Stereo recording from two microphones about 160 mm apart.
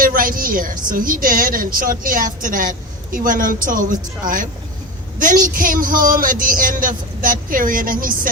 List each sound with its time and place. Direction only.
0.0 s a woman's voice: 60° right (ahead or behind)
5.2 s a woman's voice: 55° right (ahead or behind)